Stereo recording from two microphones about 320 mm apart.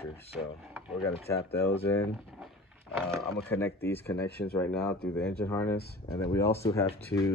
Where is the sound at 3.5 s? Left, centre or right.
Centre.